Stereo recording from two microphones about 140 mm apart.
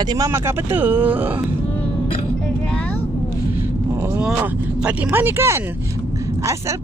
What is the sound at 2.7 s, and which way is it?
Vehicle, 10° left (ahead or behind).